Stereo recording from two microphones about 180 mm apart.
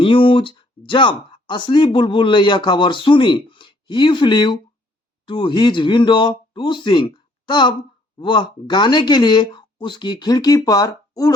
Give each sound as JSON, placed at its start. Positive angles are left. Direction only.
{"t": 0.0, "sound": "speech", "side_deg": 30}